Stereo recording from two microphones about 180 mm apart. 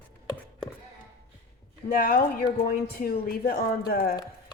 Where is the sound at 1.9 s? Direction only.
55° left (ahead or behind).